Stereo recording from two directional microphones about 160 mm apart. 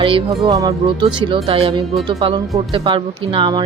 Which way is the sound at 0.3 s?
20° right (ahead or behind).